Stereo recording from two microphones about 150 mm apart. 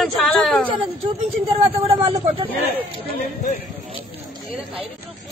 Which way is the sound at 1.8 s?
40° right (ahead or behind).